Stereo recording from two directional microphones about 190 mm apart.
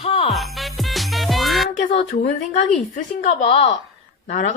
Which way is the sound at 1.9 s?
35° left (ahead or behind).